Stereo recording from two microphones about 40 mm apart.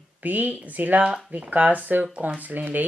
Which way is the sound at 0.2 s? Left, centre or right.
Right.